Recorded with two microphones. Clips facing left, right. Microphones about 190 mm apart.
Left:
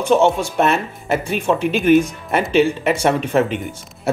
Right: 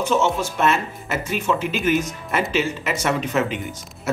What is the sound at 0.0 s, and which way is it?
Speech, 55° left (ahead or behind).